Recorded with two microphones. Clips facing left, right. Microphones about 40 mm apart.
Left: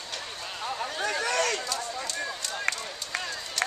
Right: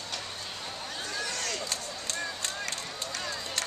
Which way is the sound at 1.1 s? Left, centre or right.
Left.